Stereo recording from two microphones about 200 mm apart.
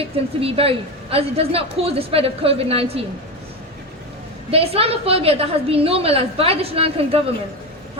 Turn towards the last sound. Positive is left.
turn(degrees=-30)  # may be behind; listen again after turning